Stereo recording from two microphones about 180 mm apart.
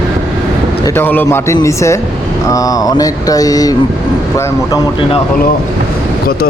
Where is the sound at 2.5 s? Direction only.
20° left (ahead or behind).